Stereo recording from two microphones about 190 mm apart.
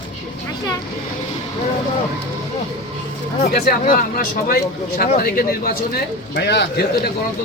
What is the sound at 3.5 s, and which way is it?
A man's voice, 55° left (ahead or behind).